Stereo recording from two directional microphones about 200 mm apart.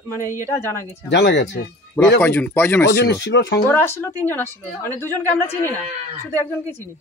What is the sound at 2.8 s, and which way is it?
Speech, 55° left (ahead or behind).